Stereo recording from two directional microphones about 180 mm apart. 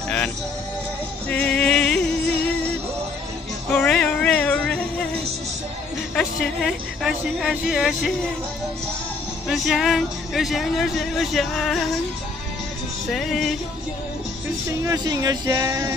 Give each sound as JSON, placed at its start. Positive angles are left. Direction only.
{"t": 1.3, "sound": "music", "side_deg": 5}
{"t": 3.7, "sound": "music", "side_deg": 5}
{"t": 6.1, "sound": "speech", "side_deg": 0}
{"t": 9.5, "sound": "speech", "side_deg": 0}
{"t": 13.1, "sound": "speech", "side_deg": 0}
{"t": 14.8, "sound": "speech", "side_deg": -20}